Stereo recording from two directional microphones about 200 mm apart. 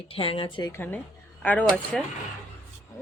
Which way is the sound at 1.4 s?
10° left (ahead or behind).